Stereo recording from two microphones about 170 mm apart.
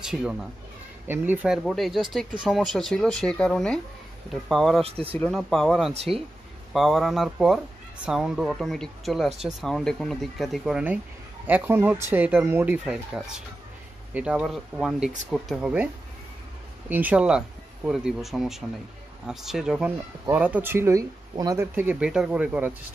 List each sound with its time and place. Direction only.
0.0 s speech: 5° right (ahead or behind)
4.8 s speech: 35° right (ahead or behind)
5.2 s speech: centre (ahead or behind)
5.9 s speech: 35° right (ahead or behind)
6.7 s speech: centre (ahead or behind)
16.9 s speech: 10° right (ahead or behind)
21.7 s speech: 10° right (ahead or behind)